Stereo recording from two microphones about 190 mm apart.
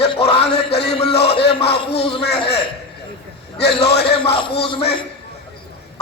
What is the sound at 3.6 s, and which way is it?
Speech, 60° left (ahead or behind).